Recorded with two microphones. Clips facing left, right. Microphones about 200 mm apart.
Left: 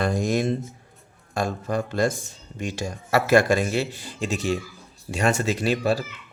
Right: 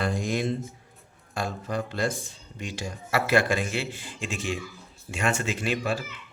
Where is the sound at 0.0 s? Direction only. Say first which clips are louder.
Left 4 dB; 45° left (ahead or behind).